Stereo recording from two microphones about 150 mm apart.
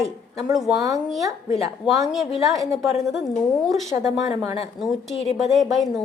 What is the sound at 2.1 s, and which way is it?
Speech, centre (ahead or behind).